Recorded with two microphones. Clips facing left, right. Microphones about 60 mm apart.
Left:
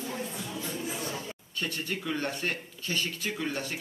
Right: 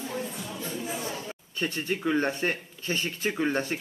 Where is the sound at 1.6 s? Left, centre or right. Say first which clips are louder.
Right 4 dB; right.